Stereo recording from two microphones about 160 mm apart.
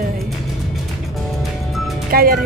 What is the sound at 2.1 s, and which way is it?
Speech, 65° right (ahead or behind).